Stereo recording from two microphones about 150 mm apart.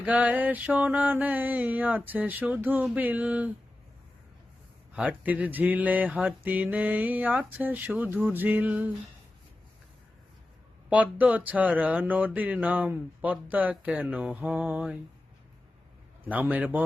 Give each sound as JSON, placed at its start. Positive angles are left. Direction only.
{"t": 0.0, "sound": "speech", "side_deg": -10}
{"t": 4.9, "sound": "speech", "side_deg": -10}
{"t": 10.8, "sound": "speech", "side_deg": -10}
{"t": 16.2, "sound": "speech", "side_deg": -10}